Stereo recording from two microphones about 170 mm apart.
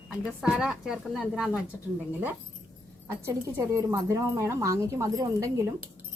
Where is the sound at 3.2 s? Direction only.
15° right (ahead or behind).